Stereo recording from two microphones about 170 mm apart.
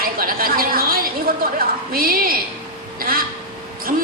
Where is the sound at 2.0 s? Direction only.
60° right (ahead or behind).